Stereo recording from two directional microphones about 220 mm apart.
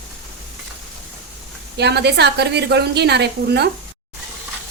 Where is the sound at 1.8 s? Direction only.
50° right (ahead or behind).